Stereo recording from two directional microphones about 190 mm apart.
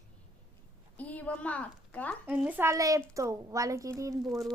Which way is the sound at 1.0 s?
10° left (ahead or behind).